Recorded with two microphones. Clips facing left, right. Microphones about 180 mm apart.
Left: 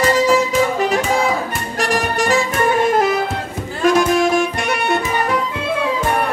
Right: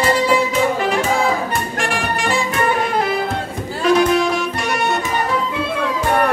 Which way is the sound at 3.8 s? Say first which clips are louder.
Even; 45° left (ahead or behind).